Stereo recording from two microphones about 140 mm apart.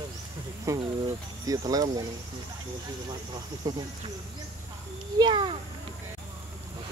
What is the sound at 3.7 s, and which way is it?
Speech, 25° right (ahead or behind).